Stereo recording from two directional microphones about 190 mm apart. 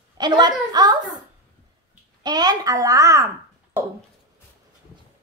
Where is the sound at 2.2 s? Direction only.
20° right (ahead or behind).